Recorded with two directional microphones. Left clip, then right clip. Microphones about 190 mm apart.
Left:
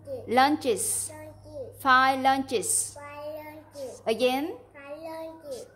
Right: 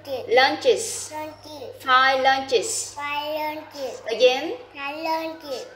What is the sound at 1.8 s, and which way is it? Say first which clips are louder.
Speech: right 3 dB; 40° left (ahead or behind).